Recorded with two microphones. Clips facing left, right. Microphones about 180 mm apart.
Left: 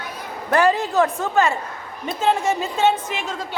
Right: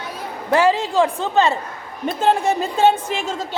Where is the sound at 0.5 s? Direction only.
15° right (ahead or behind).